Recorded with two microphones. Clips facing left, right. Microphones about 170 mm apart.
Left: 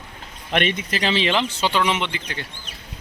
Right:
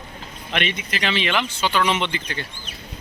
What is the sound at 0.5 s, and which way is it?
Speech, 45° left (ahead or behind).